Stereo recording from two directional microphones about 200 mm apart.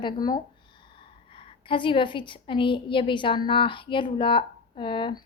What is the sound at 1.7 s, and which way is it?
A woman's voice, 25° left (ahead or behind).